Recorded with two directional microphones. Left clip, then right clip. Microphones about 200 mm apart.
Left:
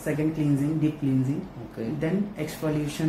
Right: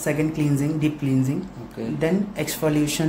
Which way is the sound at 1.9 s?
60° right (ahead or behind).